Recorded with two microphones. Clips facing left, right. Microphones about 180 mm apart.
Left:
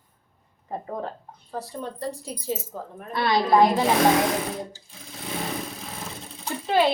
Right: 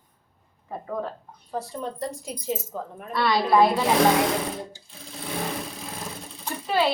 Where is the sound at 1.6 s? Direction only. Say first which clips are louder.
Right 2 dB; 35° left (ahead or behind).